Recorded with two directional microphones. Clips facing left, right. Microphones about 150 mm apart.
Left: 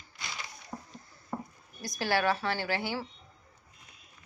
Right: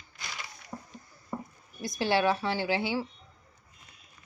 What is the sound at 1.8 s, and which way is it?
A woman's voice, 20° right (ahead or behind).